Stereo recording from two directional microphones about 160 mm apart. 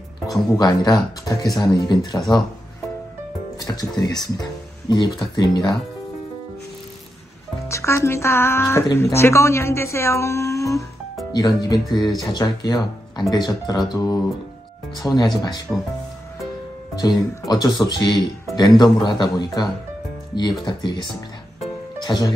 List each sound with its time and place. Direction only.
0.3 s speech: 25° left (ahead or behind)
3.5 s speech: 25° left (ahead or behind)
7.6 s speech: 15° left (ahead or behind)
15.0 s speech: 5° left (ahead or behind)
16.9 s speech: 25° left (ahead or behind)